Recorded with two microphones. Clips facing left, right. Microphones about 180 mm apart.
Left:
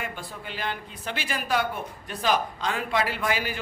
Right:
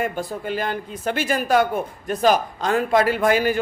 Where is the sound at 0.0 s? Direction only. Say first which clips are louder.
Right 11 dB; 45° right (ahead or behind).